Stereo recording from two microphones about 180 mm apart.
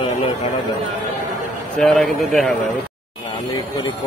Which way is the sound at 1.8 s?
5° left (ahead or behind).